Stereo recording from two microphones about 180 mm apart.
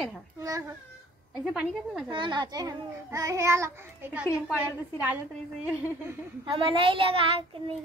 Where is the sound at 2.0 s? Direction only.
25° right (ahead or behind); by 4.3 s 10° right (ahead or behind).